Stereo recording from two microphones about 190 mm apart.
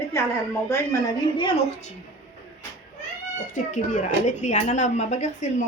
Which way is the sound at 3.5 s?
40° left (ahead or behind).